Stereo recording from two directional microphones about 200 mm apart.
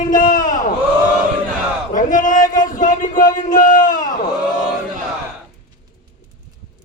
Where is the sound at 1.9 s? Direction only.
40° left (ahead or behind).